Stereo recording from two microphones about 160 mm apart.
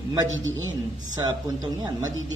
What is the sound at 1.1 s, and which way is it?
Speech, 25° right (ahead or behind).